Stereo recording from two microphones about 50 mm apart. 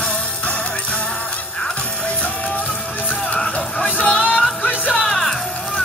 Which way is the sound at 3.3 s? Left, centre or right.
Centre.